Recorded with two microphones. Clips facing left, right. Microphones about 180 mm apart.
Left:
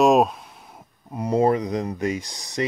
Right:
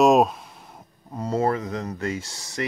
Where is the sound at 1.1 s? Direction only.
15° left (ahead or behind).